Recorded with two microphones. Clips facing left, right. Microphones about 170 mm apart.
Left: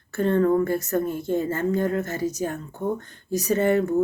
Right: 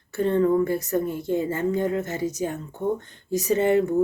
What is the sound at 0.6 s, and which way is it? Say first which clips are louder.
A woman's voice: even; 15° right (ahead or behind).